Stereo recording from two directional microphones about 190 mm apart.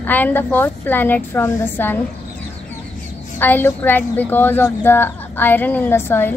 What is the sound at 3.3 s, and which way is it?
A woman's voice, 10° left (ahead or behind).